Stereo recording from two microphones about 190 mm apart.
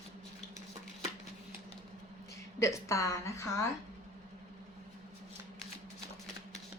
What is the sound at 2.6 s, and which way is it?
Speech, 15° left (ahead or behind).